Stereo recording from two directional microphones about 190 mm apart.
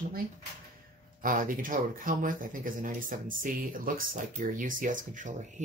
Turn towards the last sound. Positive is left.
turn(degrees=-40)  # may be behind; listen again after turning